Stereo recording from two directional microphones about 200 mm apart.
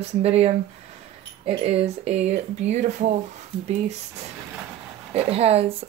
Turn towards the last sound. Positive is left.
turn(degrees=-30)  # may be behind; listen again after turning